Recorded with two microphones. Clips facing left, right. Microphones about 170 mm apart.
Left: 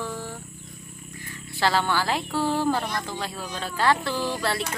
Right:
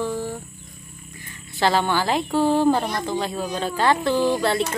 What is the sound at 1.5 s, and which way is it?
A woman's voice, 20° right (ahead or behind).